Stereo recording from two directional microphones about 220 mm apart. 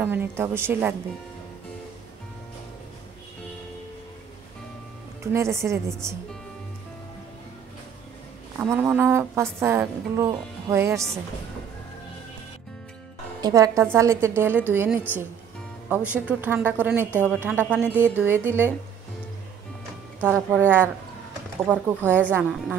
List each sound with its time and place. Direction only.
0.0 s a woman's voice: 10° right (ahead or behind)
5.2 s a woman's voice: 10° right (ahead or behind)
8.5 s a woman's voice: 10° right (ahead or behind)
13.4 s a woman's voice: 15° right (ahead or behind)
20.5 s a woman's voice: 10° right (ahead or behind)